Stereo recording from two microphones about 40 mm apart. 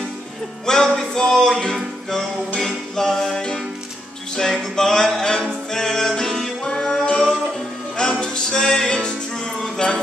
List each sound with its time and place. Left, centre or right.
0.7 s music: centre
2.6 s music: centre
6.6 s music: left
8.0 s music: centre
9.8 s jingle bell: left